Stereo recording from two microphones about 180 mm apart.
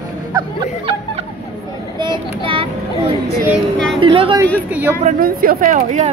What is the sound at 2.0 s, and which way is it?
Speech, 25° right (ahead or behind).